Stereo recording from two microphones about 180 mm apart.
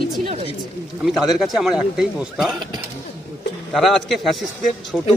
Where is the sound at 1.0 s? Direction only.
Centre (ahead or behind).